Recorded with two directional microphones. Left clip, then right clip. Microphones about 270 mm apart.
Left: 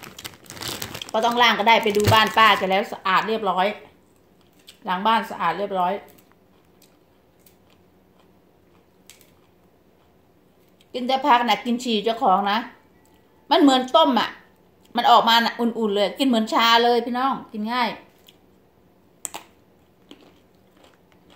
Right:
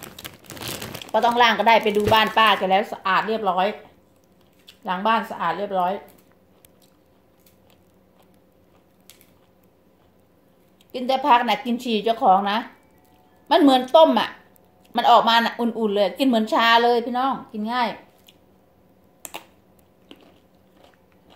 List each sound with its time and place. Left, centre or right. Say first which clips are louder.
0.1 s crumpling: even; centre
1.0 s a woman's voice: right 1 dB; centre
10.9 s a woman's voice: right 1 dB; centre
19.2 s computer keyboard: left 1 dB; centre
20.1 s biting: even; centre